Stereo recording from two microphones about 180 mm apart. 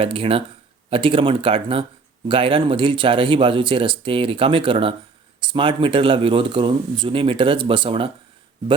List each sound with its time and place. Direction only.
0.0 s speech: 30° right (ahead or behind)